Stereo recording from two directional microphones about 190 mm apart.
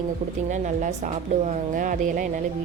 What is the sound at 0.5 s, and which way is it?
Speech, 40° right (ahead or behind).